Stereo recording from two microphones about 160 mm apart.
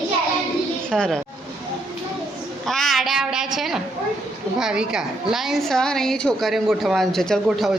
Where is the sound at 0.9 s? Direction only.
5° left (ahead or behind).